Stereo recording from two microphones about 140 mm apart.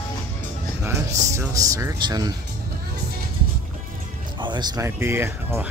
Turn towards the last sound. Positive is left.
turn(degrees=-15)  # may be behind; listen again after turning